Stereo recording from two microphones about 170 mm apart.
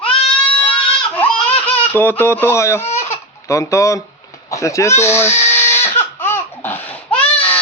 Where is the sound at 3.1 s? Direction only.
15° left (ahead or behind).